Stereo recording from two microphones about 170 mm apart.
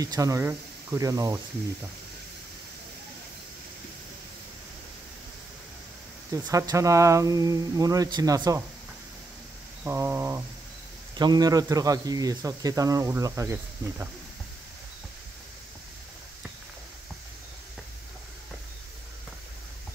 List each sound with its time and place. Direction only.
0.0 s speech: 20° right (ahead or behind)
6.3 s speech: 20° right (ahead or behind)
9.8 s a sound: 15° right (ahead or behind)
11.1 s speech: 25° right (ahead or behind)